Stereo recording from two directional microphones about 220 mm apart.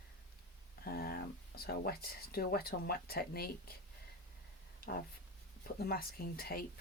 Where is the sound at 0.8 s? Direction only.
45° left (ahead or behind).